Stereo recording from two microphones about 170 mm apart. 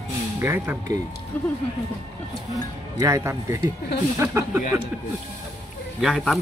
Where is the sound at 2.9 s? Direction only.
20° right (ahead or behind).